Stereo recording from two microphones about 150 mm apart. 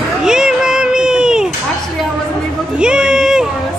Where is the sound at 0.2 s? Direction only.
5° right (ahead or behind).